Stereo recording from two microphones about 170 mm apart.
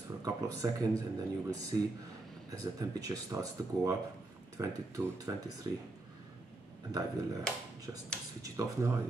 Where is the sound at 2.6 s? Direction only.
20° right (ahead or behind).